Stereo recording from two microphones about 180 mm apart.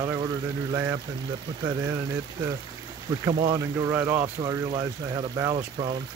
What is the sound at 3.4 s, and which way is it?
Speech, 20° right (ahead or behind).